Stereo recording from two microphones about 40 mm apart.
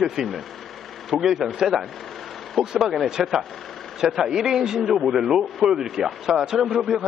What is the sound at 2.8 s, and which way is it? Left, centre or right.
Speech, centre.